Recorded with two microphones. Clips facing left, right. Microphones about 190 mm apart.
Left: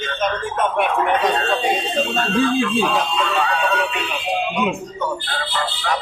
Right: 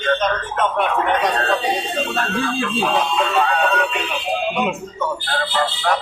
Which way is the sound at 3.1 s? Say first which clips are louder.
Right 2 dB; 50° right (ahead or behind).